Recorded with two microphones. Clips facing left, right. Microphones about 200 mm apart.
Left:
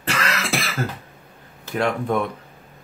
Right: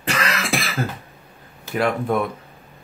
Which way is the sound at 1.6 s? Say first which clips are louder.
Right 1 dB; 5° right (ahead or behind).